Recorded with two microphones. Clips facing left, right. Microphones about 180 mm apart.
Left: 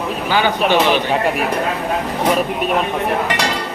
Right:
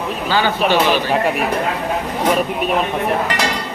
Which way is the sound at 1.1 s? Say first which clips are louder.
Even; centre (ahead or behind).